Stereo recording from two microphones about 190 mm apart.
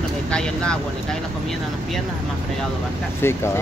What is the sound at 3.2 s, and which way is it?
Speech, 15° left (ahead or behind).